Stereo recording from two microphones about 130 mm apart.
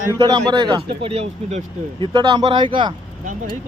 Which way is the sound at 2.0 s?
35° right (ahead or behind).